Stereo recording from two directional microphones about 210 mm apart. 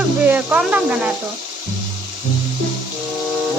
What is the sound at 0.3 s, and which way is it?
Speech, 5° right (ahead or behind).